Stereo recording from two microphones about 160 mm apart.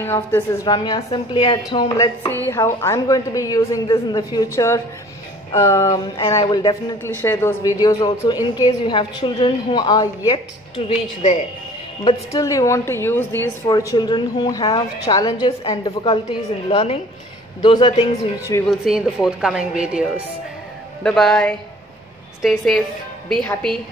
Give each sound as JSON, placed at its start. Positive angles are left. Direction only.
{"t": 0.0, "sound": "a man's voice", "side_deg": 15}
{"t": 0.7, "sound": "a woman's voice", "side_deg": 25}
{"t": 7.0, "sound": "a man's voice", "side_deg": 15}
{"t": 12.3, "sound": "a woman's voice", "side_deg": 20}
{"t": 18.7, "sound": "a woman's voice", "side_deg": 0}